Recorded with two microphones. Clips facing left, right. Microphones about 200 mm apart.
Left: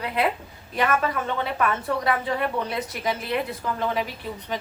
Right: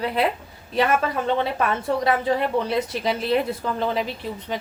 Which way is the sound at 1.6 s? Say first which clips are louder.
Right 2 dB; 25° right (ahead or behind).